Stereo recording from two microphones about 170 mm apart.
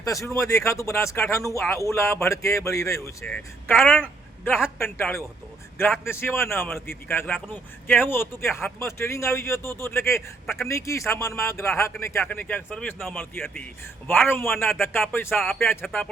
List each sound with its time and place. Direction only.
0.0 s speech: 20° left (ahead or behind); by 15.7 s centre (ahead or behind)